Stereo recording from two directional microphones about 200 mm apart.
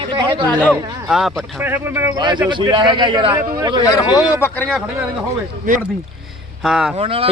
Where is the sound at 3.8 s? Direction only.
15° left (ahead or behind).